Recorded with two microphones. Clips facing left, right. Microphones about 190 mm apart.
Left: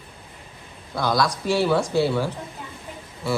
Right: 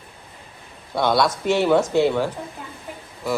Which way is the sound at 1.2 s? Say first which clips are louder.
Right 3 dB; 20° right (ahead or behind).